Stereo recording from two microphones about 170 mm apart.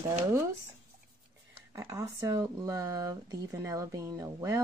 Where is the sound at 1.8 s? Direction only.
20° right (ahead or behind).